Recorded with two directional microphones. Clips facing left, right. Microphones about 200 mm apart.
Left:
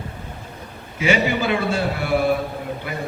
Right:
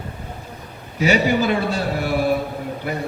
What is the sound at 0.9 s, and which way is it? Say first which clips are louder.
A man's voice: right 2 dB; 40° right (ahead or behind).